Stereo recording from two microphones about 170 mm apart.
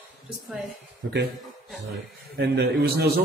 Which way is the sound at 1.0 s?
90° right.